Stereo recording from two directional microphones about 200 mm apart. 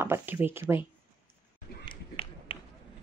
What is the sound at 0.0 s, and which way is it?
Speech, 10° right (ahead or behind).